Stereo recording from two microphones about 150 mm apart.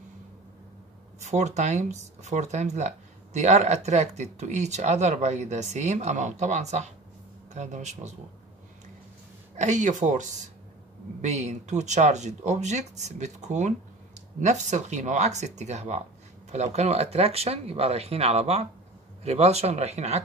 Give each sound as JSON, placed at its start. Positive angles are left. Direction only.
{"t": 1.2, "sound": "speech", "side_deg": -50}
{"t": 9.6, "sound": "speech", "side_deg": -55}